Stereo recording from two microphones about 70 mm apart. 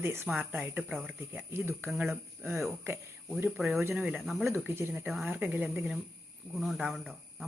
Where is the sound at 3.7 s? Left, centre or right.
Right.